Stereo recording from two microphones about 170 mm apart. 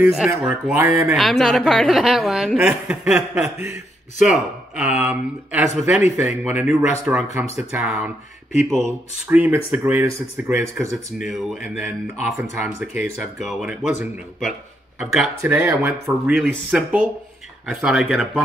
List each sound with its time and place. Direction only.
0.2 s a woman's voice: 5° right (ahead or behind)
1.1 s a woman's voice: centre (ahead or behind); by 11.1 s 20° right (ahead or behind)
11.1 s a woman's voice: centre (ahead or behind)